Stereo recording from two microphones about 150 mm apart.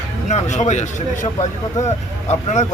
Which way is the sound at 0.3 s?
50° left (ahead or behind).